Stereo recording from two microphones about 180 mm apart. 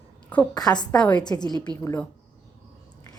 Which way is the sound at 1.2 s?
25° left (ahead or behind).